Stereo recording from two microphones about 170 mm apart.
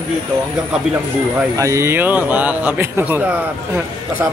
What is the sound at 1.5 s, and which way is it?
Speech, 20° right (ahead or behind).